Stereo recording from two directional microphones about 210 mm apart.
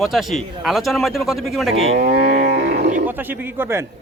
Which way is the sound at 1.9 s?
50° right (ahead or behind).